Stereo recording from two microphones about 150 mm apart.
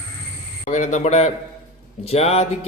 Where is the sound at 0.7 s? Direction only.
55° left (ahead or behind).